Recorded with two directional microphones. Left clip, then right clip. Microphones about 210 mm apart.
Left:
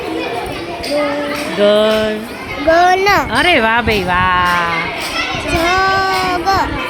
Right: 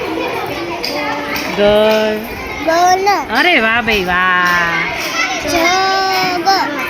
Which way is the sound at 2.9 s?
50° left (ahead or behind).